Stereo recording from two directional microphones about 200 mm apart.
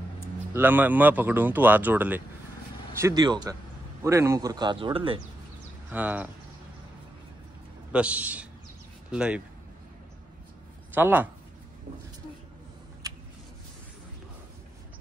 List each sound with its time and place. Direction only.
0.5 s speech: 10° right (ahead or behind); by 5.2 s 25° right (ahead or behind)
5.9 s speech: 10° right (ahead or behind)
7.9 s speech: 5° right (ahead or behind)
11.0 s speech: 10° right (ahead or behind)